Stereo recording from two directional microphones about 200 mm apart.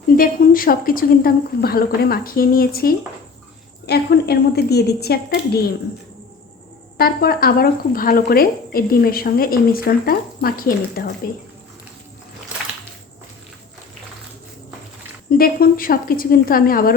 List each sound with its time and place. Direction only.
0.2 s speech: 45° left (ahead or behind)
6.9 s speech: 50° left (ahead or behind)
15.4 s speech: 45° left (ahead or behind)